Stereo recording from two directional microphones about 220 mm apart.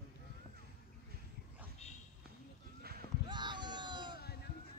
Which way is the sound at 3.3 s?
20° right (ahead or behind).